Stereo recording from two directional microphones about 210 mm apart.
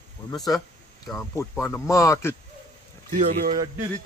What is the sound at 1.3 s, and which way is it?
Speech, 10° left (ahead or behind).